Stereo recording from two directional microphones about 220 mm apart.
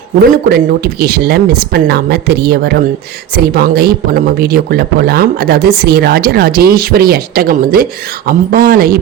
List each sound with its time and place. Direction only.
0.3 s speech: 45° right (ahead or behind)